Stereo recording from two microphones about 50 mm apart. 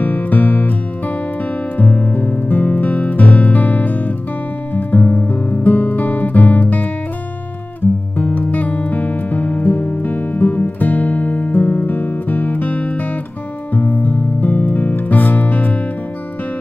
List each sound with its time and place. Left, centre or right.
0.0 s music: left
4.7 s guitar: left
7.8 s music: left